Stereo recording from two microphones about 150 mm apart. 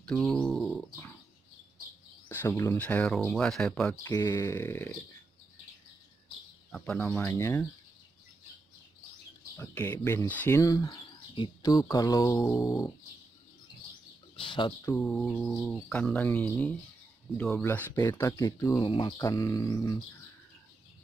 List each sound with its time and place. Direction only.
0.0 s a sound: 5° left (ahead or behind)
2.2 s speech: 20° left (ahead or behind)
4.0 s speech: 20° left (ahead or behind)
7.0 s speech: 15° left (ahead or behind)
9.6 s speech: 15° left (ahead or behind)
14.3 s chicken: 35° left (ahead or behind)
15.0 s speech: centre (ahead or behind); by 18.9 s 20° left (ahead or behind)
18.9 s speech: 35° left (ahead or behind)